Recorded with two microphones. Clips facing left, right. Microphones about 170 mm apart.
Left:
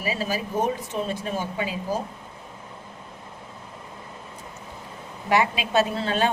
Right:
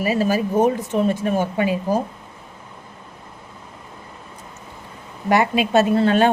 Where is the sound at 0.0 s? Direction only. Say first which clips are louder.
Right 8 dB; 55° right (ahead or behind).